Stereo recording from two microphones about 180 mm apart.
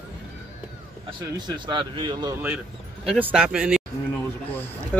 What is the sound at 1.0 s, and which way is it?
Speech, 25° right (ahead or behind).